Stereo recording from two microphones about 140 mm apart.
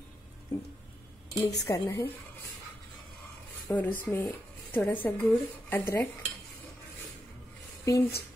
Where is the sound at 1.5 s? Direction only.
25° left (ahead or behind).